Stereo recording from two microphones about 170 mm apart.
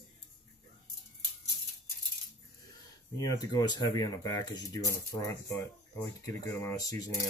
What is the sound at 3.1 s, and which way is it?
Speech, 20° left (ahead or behind).